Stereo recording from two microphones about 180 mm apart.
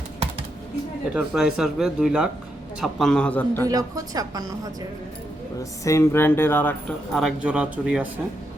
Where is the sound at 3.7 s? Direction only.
20° right (ahead or behind).